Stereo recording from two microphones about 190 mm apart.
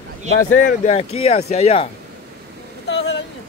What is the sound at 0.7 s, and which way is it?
Speech, 35° left (ahead or behind).